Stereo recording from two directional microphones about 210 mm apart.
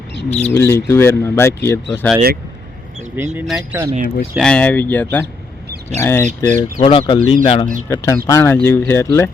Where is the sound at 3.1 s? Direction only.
10° right (ahead or behind); by 6.5 s 10° left (ahead or behind).